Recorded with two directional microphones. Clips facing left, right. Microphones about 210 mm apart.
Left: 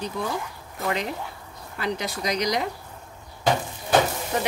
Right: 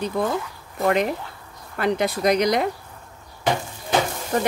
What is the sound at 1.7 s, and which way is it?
Speech, 55° right (ahead or behind).